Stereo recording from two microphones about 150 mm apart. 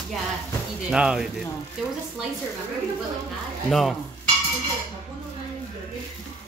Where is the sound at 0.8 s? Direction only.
5° right (ahead or behind).